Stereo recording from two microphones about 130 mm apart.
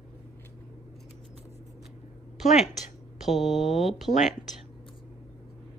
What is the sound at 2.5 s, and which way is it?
Speech, 65° left (ahead or behind).